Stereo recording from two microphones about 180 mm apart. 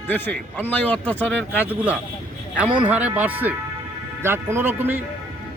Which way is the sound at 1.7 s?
5° right (ahead or behind).